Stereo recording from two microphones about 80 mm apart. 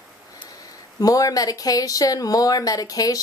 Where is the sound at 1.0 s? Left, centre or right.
Left.